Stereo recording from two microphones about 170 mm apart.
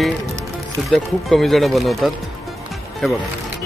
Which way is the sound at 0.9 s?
Centre (ahead or behind).